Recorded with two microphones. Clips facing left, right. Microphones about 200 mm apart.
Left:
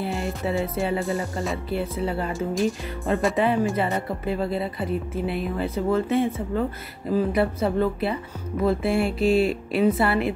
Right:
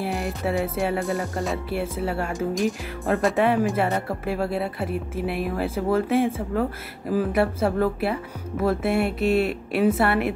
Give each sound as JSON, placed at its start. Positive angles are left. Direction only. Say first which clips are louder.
{"t": 0.1, "sound": "speech", "louder": "right 1 dB", "side_deg": 0}
{"t": 6.1, "sound": "speech", "louder": "right 1 dB", "side_deg": -90}
{"t": 7.1, "sound": "speech", "louder": "even", "side_deg": -5}